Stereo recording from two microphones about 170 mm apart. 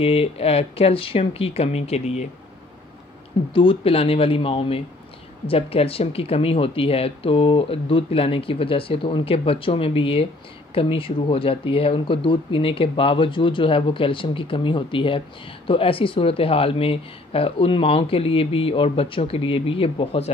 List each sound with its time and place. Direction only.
0.0 s speech: 35° left (ahead or behind)
3.5 s speech: 30° left (ahead or behind)